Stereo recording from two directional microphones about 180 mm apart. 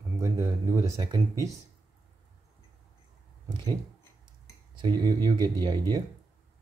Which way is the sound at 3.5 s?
25° right (ahead or behind).